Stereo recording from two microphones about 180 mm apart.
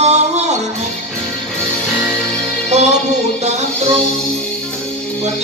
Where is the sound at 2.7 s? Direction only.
40° right (ahead or behind).